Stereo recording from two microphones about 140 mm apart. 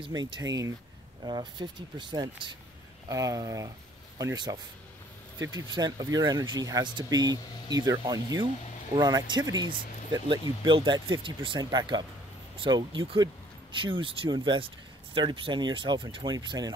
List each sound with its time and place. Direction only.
0.0 s speech: 30° right (ahead or behind)